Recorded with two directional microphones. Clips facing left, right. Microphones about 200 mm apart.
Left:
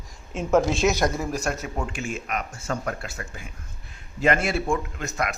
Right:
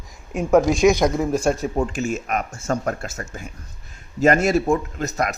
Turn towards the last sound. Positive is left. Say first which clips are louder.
# right 5 dB
turn(degrees=-40)  # may be behind; listen again after turning